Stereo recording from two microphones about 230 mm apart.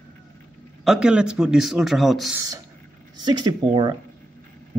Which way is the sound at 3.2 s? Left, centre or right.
Centre.